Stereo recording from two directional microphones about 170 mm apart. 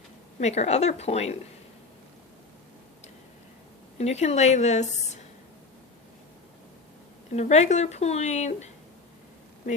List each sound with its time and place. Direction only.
0.3 s speech: 40° left (ahead or behind)
3.9 s speech: 40° left (ahead or behind)
7.3 s speech: 40° left (ahead or behind)